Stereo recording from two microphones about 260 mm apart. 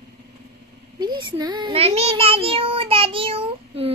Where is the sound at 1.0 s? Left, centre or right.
Centre.